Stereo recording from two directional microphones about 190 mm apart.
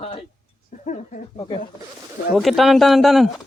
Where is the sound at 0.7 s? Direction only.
40° left (ahead or behind).